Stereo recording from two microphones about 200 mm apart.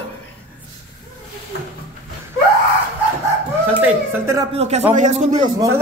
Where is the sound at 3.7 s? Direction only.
10° right (ahead or behind).